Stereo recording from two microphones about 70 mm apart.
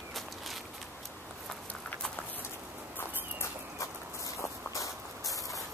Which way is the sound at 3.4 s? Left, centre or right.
Left.